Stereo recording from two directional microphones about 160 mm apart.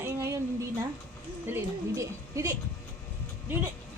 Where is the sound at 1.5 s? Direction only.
20° right (ahead or behind).